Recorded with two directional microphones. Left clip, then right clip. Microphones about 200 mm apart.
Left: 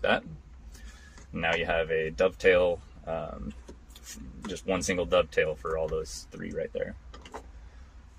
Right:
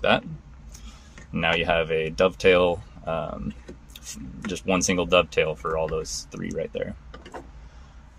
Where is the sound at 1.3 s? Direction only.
20° right (ahead or behind).